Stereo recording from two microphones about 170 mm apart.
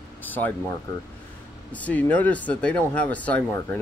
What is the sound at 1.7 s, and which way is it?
Speech, 10° left (ahead or behind).